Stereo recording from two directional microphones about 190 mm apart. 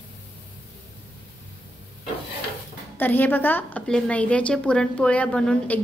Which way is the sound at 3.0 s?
10° left (ahead or behind).